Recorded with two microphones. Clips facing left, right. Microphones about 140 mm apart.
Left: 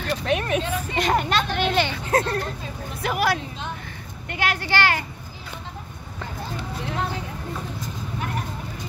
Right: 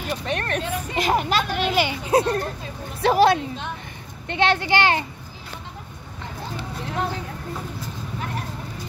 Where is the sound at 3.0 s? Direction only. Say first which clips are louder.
Right 7 dB; 30° right (ahead or behind).